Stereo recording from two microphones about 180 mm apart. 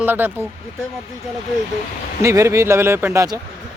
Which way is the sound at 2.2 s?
15° right (ahead or behind).